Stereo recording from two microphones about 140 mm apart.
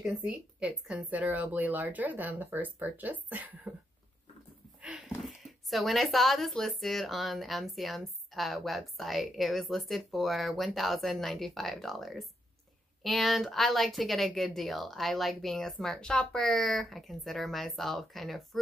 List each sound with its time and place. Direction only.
0.0 s speech: 10° right (ahead or behind)
4.8 s a sound: 5° right (ahead or behind)
5.7 s speech: centre (ahead or behind)